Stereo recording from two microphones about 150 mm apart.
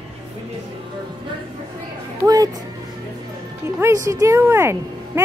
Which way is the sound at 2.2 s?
25° right (ahead or behind).